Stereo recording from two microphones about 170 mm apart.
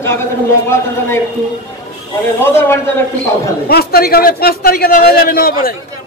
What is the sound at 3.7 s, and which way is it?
A man's voice, 60° left (ahead or behind).